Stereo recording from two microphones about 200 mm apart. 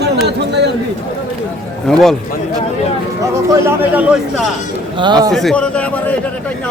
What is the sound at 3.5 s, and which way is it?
Speech, 10° right (ahead or behind).